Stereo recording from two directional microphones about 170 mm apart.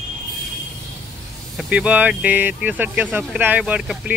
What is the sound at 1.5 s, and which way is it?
Speech, 5° right (ahead or behind).